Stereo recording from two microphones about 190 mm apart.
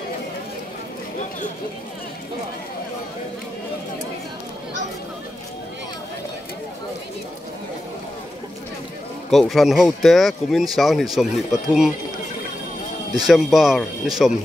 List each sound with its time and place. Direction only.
9.3 s speech: centre (ahead or behind)
13.3 s speech: centre (ahead or behind)